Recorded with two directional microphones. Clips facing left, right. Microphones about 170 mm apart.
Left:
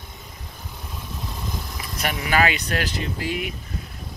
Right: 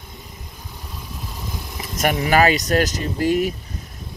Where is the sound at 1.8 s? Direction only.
25° right (ahead or behind).